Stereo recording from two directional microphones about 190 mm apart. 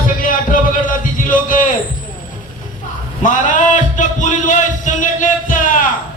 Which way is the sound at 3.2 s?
40° left (ahead or behind).